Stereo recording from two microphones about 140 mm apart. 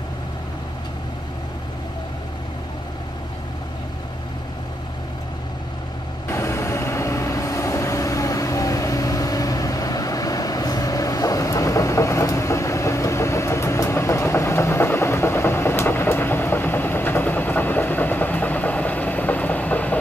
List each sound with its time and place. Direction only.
6.2 s vehicle: 20° left (ahead or behind)